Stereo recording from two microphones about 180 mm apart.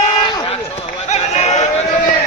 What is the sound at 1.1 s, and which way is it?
Sheep, 40° left (ahead or behind).